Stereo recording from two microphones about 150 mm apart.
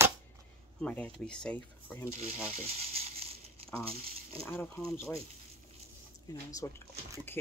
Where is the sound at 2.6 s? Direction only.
40° right (ahead or behind).